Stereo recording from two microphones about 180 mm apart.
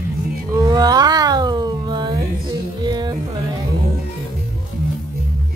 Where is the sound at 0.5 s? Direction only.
20° right (ahead or behind).